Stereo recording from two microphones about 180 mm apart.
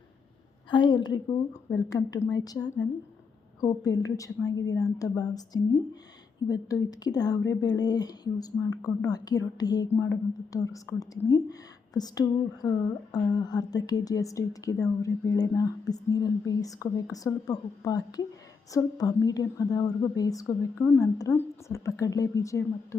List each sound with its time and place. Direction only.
0.7 s a woman's voice: 25° left (ahead or behind)